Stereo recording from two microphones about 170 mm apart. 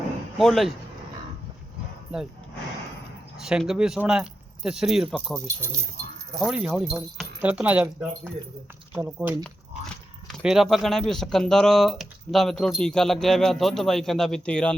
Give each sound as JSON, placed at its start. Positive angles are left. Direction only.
{"t": 0.3, "sound": "speech", "side_deg": 0}
{"t": 3.3, "sound": "speech", "side_deg": -5}
{"t": 5.5, "sound": "speech", "side_deg": -15}